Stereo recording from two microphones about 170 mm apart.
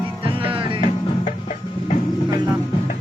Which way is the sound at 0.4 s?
30° right (ahead or behind).